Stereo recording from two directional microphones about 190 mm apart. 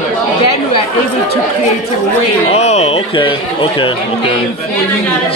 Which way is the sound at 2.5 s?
35° left (ahead or behind).